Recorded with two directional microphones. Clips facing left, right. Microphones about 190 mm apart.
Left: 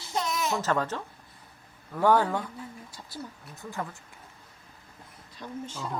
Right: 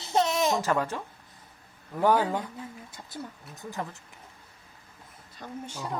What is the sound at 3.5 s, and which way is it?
Speech, 15° right (ahead or behind).